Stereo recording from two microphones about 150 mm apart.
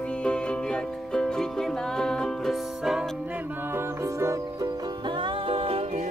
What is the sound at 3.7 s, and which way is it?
Music, 15° right (ahead or behind).